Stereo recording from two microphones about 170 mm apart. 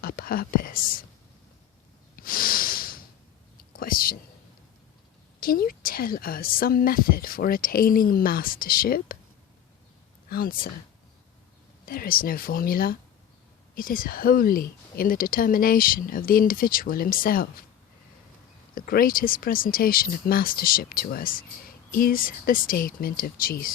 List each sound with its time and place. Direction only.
0.0 s a woman's voice: 60° left (ahead or behind)
2.1 s snort: 60° left (ahead or behind)
3.6 s whispering: 60° left (ahead or behind)
5.4 s a woman's voice: 60° left (ahead or behind)
10.2 s speech: 60° left (ahead or behind)
11.9 s a woman's voice: 60° left (ahead or behind)
18.7 s a woman's voice: 60° left (ahead or behind)